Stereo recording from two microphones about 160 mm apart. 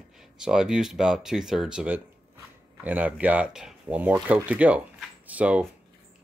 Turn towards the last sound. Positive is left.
turn(degrees=-10)  # may be behind; listen again after turning